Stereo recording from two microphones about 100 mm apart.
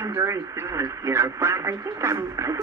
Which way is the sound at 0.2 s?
30° right (ahead or behind).